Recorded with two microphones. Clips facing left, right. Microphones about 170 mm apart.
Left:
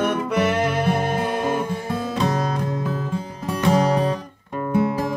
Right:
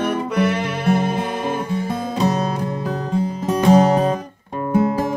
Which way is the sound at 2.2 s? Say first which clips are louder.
Right 4 dB; 25° right (ahead or behind).